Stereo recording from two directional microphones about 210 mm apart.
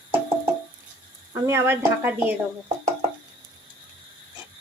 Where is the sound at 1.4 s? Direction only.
10° right (ahead or behind).